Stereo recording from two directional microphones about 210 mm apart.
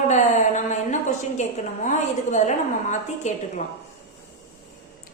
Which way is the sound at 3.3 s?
35° left (ahead or behind).